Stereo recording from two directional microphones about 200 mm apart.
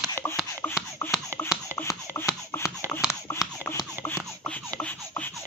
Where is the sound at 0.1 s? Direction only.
10° left (ahead or behind).